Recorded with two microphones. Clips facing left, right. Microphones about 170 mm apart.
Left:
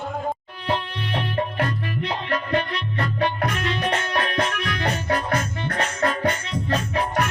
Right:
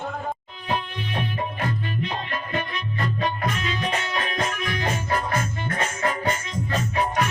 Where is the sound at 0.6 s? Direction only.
70° left (ahead or behind).